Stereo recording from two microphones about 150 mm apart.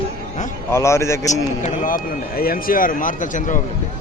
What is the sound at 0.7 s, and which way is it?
Speech, 20° left (ahead or behind).